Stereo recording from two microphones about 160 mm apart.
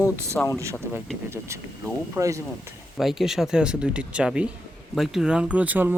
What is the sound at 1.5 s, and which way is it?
Speech, 15° right (ahead or behind).